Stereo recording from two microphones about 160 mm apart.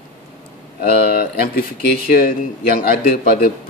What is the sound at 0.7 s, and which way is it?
A man's voice, 70° left (ahead or behind).